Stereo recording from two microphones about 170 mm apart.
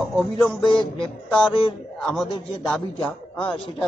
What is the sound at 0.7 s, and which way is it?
Speech, 30° left (ahead or behind).